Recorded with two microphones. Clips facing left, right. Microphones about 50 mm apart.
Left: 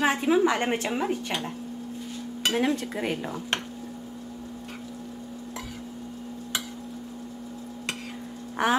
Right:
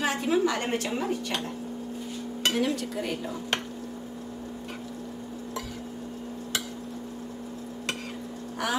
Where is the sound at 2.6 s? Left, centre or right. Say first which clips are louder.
Left 2 dB; left.